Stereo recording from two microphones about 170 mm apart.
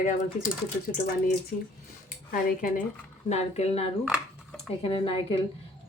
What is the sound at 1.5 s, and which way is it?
Speech, 45° left (ahead or behind).